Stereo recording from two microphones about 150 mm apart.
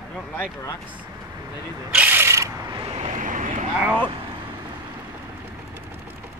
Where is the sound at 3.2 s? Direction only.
60° right (ahead or behind).